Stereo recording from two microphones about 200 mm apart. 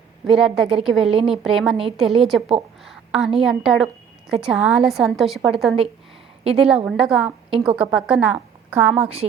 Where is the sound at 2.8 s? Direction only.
Centre (ahead or behind).